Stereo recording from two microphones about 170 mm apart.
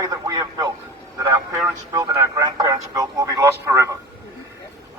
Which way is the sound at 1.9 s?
20° right (ahead or behind).